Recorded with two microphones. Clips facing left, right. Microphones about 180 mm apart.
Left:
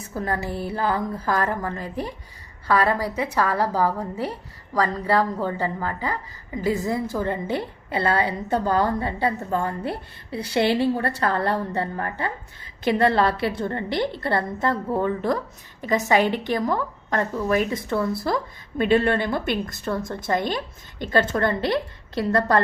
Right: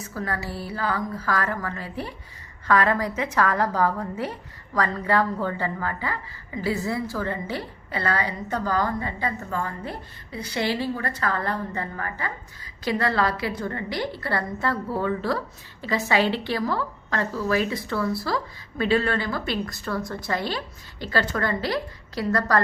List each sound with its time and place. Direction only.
0.0 s music: 20° left (ahead or behind)
0.4 s music: 50° left (ahead or behind)
0.9 s a woman's voice: 25° left (ahead or behind)
2.6 s a woman's voice: 10° left (ahead or behind); by 9.6 s 30° left (ahead or behind)
10.3 s a woman's voice: 65° left (ahead or behind)
11.2 s a woman's voice: 30° left (ahead or behind)